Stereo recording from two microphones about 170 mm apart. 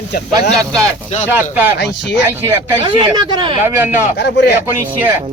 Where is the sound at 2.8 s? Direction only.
25° right (ahead or behind).